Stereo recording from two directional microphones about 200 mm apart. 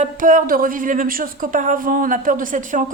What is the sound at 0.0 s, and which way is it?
Speech, 40° right (ahead or behind).